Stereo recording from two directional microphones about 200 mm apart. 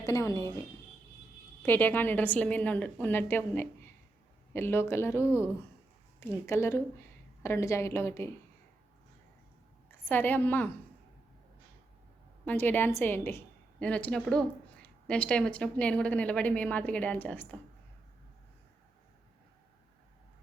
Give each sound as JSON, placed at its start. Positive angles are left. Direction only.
{"t": 0.0, "sound": "a woman's voice", "side_deg": 15}
{"t": 1.6, "sound": "a woman's voice", "side_deg": 10}
{"t": 10.1, "sound": "a woman's voice", "side_deg": 10}
{"t": 12.5, "sound": "a woman's voice", "side_deg": 10}